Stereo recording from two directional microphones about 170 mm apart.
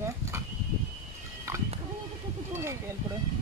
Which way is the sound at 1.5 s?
15° right (ahead or behind).